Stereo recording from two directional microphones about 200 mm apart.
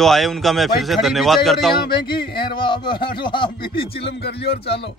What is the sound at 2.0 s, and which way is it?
Speech, 25° left (ahead or behind).